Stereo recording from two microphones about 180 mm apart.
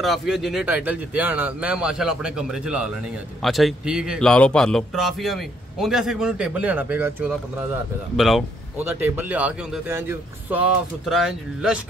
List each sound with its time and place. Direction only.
0.0 s speech: centre (ahead or behind)
8.2 s speech: centre (ahead or behind)